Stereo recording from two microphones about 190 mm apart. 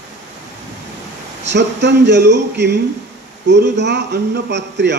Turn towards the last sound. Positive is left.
turn(degrees=-65)  # may be behind; listen again after turning